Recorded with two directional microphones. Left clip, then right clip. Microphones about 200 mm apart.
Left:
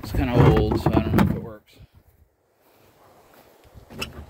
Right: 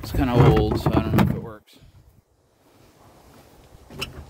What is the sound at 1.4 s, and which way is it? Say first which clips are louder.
Door: even; 20° right (ahead or behind).